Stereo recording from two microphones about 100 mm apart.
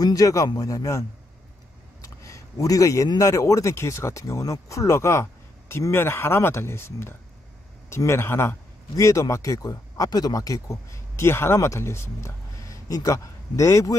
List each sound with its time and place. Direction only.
0.0 s speech: 35° left (ahead or behind)
2.0 s a sound: 30° left (ahead or behind)
3.2 s speech: 35° left (ahead or behind)